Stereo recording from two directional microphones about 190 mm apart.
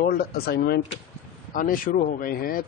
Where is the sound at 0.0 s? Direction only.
55° left (ahead or behind).